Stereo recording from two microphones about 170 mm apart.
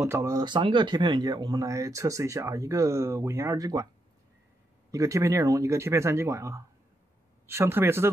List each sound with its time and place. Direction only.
0.1 s speech: 20° right (ahead or behind)
4.9 s speech: 20° right (ahead or behind)